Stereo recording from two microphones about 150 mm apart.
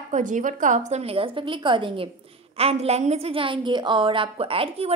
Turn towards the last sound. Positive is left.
turn(degrees=-40)  # may be behind; listen again after turning